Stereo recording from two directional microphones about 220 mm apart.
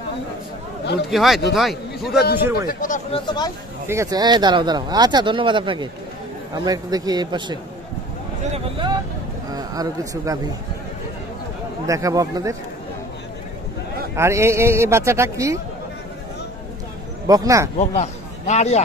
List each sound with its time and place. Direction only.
1.1 s a man's voice: centre (ahead or behind)
2.7 s speech: 40° left (ahead or behind)
3.1 s speech: 20° left (ahead or behind)
3.8 s speech: 15° right (ahead or behind)
8.5 s vehicle: 25° right (ahead or behind)
9.5 s speech: 15° right (ahead or behind)
11.9 s a man's voice: 15° right (ahead or behind)
14.1 s a man's voice: 10° right (ahead or behind)
17.3 s a man's voice: 15° right (ahead or behind)
17.7 s a man's voice: 30° left (ahead or behind)